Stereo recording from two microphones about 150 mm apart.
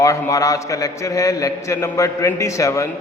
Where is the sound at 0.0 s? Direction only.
20° left (ahead or behind).